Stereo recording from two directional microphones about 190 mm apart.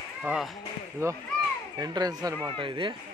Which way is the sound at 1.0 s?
15° right (ahead or behind).